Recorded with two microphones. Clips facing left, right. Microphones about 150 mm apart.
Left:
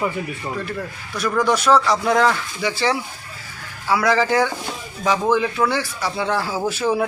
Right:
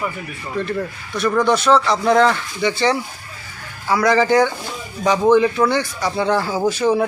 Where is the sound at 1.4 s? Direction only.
10° left (ahead or behind).